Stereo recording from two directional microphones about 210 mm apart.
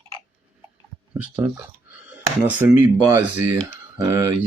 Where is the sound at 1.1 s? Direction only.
5° right (ahead or behind).